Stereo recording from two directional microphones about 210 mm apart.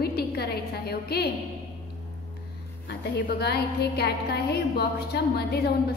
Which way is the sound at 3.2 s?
50° left (ahead or behind).